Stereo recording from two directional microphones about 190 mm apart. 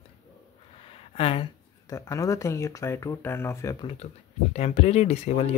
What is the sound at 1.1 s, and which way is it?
Speech, 30° left (ahead or behind).